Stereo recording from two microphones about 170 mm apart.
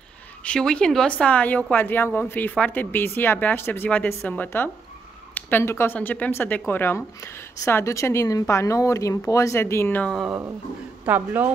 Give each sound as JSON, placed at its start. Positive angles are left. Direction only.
{"t": 0.4, "sound": "speech", "side_deg": 5}
{"t": 10.1, "sound": "speech", "side_deg": -5}